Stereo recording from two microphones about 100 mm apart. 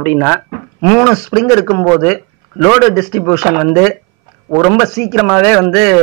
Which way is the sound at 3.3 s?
25° left (ahead or behind).